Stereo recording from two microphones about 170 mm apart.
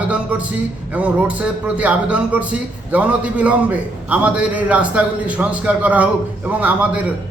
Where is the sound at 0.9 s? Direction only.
10° right (ahead or behind).